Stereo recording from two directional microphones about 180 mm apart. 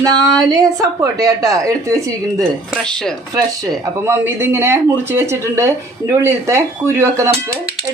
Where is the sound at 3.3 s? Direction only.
20° right (ahead or behind).